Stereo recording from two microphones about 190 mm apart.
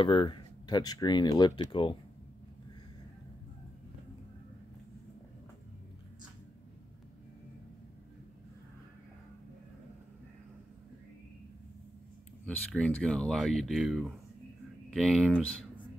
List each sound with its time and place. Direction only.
0.0 s speech: 25° left (ahead or behind)
12.4 s speech: 5° left (ahead or behind)